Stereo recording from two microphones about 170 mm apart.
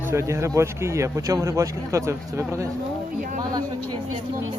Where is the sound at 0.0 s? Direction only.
15° right (ahead or behind).